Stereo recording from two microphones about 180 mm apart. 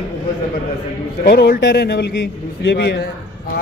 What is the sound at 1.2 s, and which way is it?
Speech, 65° left (ahead or behind).